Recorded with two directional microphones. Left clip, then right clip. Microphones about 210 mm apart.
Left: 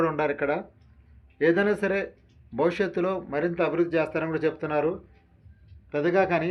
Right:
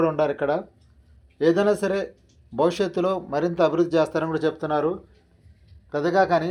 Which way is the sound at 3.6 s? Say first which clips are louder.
Right 6 dB; 20° right (ahead or behind).